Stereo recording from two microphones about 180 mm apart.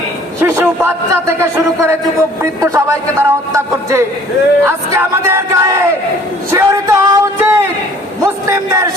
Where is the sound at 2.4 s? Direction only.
15° right (ahead or behind).